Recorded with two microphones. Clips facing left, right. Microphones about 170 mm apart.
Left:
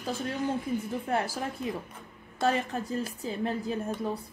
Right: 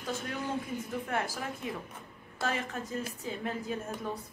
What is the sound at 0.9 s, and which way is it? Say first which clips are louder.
Speech: left 4 dB; 30° left (ahead or behind).